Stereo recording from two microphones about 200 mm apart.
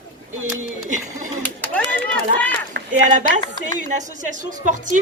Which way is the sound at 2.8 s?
55° right (ahead or behind).